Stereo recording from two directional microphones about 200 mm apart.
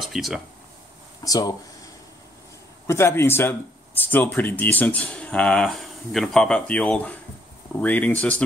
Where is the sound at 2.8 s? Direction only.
15° left (ahead or behind).